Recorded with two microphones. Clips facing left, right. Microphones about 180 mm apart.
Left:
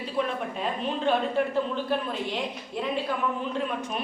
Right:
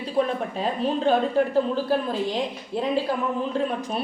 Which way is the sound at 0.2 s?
35° right (ahead or behind).